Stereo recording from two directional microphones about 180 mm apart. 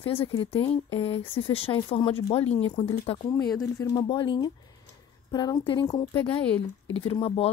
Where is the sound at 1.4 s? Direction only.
30° left (ahead or behind).